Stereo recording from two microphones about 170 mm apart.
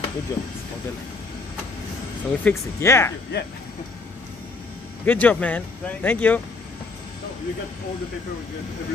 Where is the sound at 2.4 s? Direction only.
15° left (ahead or behind).